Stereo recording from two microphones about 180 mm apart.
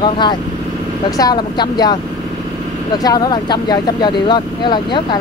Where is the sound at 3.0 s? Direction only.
20° left (ahead or behind).